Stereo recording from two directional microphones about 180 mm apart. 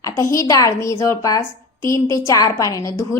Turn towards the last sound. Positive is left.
turn(degrees=20)  # may be behind; listen again after turning